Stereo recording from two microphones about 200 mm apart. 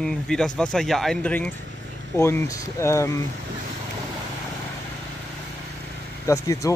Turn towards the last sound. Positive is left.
turn(degrees=15)  # may be behind; listen again after turning